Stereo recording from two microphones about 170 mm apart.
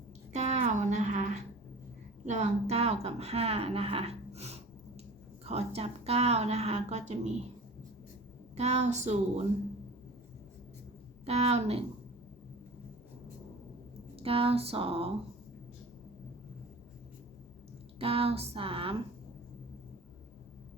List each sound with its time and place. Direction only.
0.3 s a sound: 40° right (ahead or behind)
2.2 s a woman's voice: 45° right (ahead or behind)
8.5 s a woman's voice: 40° right (ahead or behind)
11.3 s a woman's voice: 40° right (ahead or behind)
14.2 s a woman's voice: 35° right (ahead or behind)
18.0 s a woman's voice: 35° right (ahead or behind)